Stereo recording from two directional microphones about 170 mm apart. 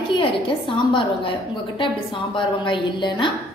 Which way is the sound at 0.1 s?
30° left (ahead or behind).